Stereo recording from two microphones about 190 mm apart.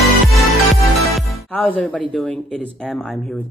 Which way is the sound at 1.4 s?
10° left (ahead or behind).